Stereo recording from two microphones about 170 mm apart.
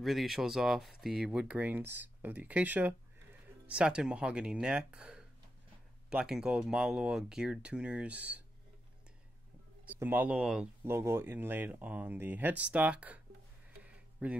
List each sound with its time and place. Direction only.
0.0 s speech: centre (ahead or behind)
9.8 s speech: 10° right (ahead or behind)
13.8 s a sound: 5° right (ahead or behind)